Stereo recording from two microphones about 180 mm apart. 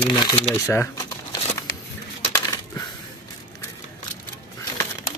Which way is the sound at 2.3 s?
20° left (ahead or behind).